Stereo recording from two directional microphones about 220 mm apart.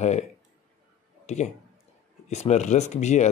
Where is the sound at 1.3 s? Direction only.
30° left (ahead or behind).